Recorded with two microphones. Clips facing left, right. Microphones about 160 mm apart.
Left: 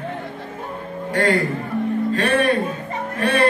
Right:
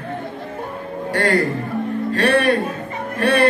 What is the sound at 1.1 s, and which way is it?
Music, 70° right (ahead or behind).